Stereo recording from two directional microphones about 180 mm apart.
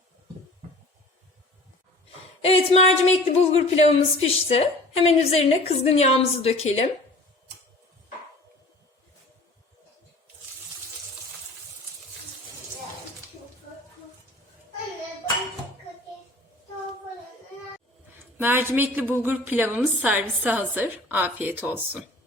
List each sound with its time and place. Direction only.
2.4 s speech: 35° left (ahead or behind)
18.2 s a woman's voice: 10° right (ahead or behind)